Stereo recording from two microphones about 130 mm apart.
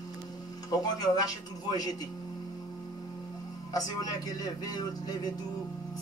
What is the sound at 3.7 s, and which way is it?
A man's voice, 30° left (ahead or behind).